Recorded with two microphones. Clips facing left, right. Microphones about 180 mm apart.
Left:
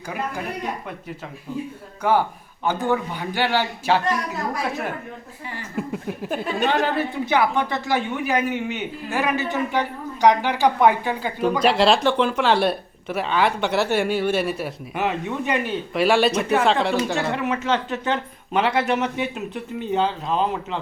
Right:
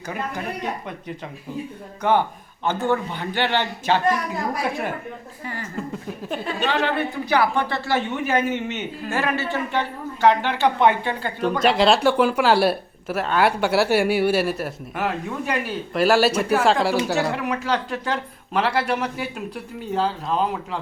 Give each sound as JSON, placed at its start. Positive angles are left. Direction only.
{"t": 2.0, "sound": "a man's voice", "side_deg": 5}
{"t": 5.7, "sound": "speech", "side_deg": 10}
{"t": 6.6, "sound": "speech", "side_deg": 45}
{"t": 7.3, "sound": "a man's voice", "side_deg": 20}